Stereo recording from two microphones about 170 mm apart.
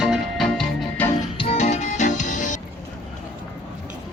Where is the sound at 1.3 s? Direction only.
40° left (ahead or behind).